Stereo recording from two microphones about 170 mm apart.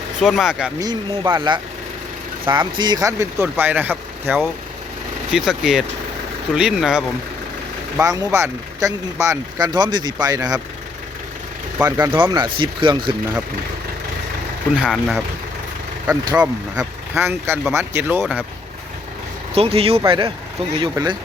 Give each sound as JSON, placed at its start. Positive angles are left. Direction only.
{"t": 0.2, "sound": "speech", "side_deg": 0}
{"t": 0.8, "sound": "speech", "side_deg": -25}
{"t": 7.9, "sound": "speech", "side_deg": -20}
{"t": 11.8, "sound": "speech", "side_deg": -20}
{"t": 14.8, "sound": "speech", "side_deg": 0}
{"t": 16.4, "sound": "speech", "side_deg": -10}
{"t": 19.5, "sound": "speech", "side_deg": -35}